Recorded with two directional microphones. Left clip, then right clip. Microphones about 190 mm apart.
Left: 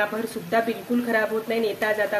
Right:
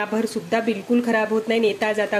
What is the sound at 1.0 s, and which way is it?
Speech, 40° right (ahead or behind).